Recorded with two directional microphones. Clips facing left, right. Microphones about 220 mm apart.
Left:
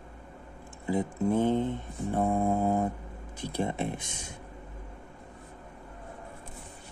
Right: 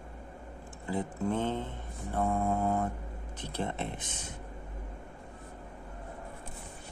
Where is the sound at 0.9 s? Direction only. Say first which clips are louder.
Left 5 dB; 10° left (ahead or behind).